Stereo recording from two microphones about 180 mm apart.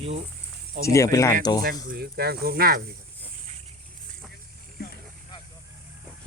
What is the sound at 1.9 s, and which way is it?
Speech, 60° right (ahead or behind).